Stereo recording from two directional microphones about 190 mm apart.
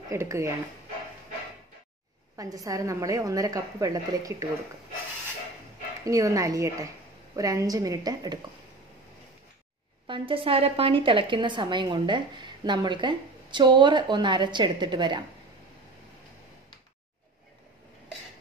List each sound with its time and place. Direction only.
0.1 s a woman's voice: 15° right (ahead or behind)
2.3 s a woman's voice: 20° right (ahead or behind)
6.0 s a woman's voice: 15° right (ahead or behind)
10.0 s a woman's voice: 25° right (ahead or behind)